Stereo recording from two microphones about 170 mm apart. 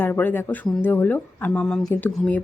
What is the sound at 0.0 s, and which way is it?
Speech, 10° left (ahead or behind).